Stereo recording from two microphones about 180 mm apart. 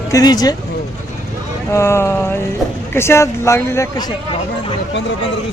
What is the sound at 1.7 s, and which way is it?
Speech, 15° left (ahead or behind).